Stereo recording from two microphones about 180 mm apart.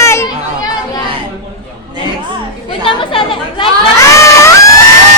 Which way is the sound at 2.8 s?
30° left (ahead or behind).